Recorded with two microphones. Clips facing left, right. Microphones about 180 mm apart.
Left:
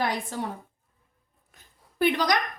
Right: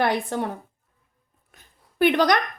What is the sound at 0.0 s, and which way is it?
Speech, 65° right (ahead or behind).